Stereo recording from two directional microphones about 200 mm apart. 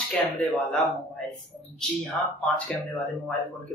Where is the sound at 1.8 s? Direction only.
Centre (ahead or behind).